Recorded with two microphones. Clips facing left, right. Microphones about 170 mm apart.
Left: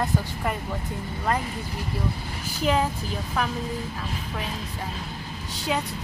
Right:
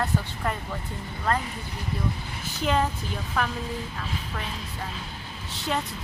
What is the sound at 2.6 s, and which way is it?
Speech, 5° left (ahead or behind).